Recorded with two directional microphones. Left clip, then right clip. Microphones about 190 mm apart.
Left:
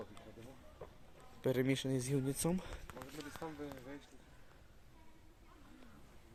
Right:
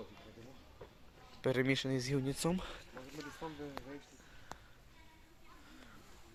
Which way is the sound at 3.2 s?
35° right (ahead or behind).